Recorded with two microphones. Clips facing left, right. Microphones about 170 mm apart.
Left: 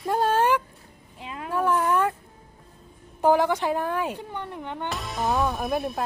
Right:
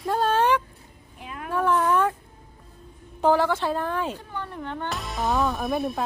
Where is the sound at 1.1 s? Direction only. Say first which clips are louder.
Left 1 dB; 25° left (ahead or behind).